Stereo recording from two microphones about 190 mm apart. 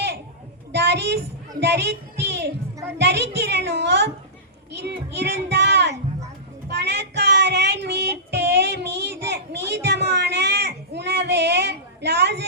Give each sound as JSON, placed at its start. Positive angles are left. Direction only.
{"t": 0.7, "sound": "a sound", "side_deg": -60}
{"t": 1.6, "sound": "a woman's voice", "side_deg": -60}
{"t": 6.7, "sound": "child singing", "side_deg": -65}